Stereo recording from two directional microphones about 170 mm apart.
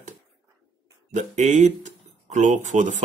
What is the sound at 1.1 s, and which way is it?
Speech, 45° right (ahead or behind).